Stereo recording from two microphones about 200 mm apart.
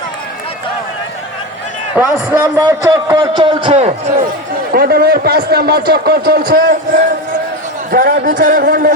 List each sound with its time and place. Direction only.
2.0 s a man's voice: 5° right (ahead or behind)
2.9 s a man's voice: 20° right (ahead or behind)
4.7 s a man's voice: 50° right (ahead or behind)